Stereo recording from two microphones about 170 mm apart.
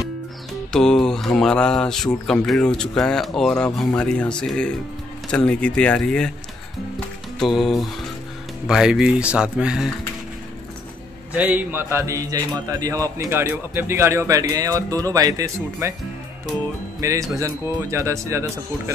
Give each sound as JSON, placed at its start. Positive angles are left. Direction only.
{"t": 0.7, "sound": "speech", "side_deg": 5}
{"t": 7.3, "sound": "speech", "side_deg": 0}
{"t": 11.3, "sound": "a man's voice", "side_deg": -10}
{"t": 17.0, "sound": "a man's voice", "side_deg": -20}